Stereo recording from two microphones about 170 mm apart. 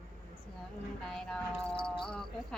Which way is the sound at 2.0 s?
5° left (ahead or behind).